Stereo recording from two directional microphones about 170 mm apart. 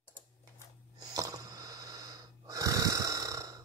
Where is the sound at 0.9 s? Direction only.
20° right (ahead or behind).